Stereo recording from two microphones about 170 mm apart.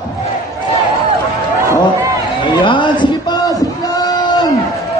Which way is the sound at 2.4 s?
30° left (ahead or behind).